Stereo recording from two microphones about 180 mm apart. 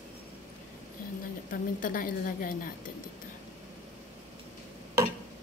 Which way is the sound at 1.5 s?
50° left (ahead or behind).